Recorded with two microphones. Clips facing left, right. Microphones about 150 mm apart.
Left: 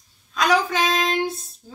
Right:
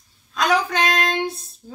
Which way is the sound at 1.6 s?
Centre (ahead or behind).